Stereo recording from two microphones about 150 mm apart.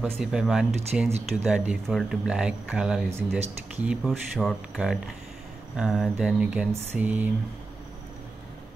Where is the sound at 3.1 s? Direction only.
15° right (ahead or behind).